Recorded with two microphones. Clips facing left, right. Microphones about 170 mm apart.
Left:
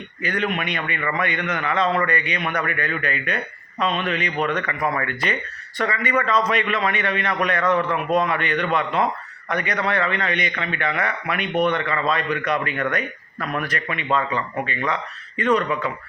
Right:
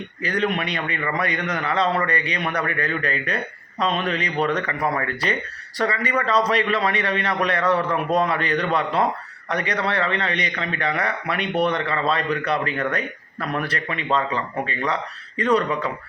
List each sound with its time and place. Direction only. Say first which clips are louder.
0.2 s a man's voice: right 1 dB; 35° right (ahead or behind)